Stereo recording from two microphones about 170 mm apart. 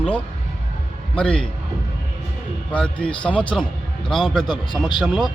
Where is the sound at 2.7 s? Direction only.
10° left (ahead or behind).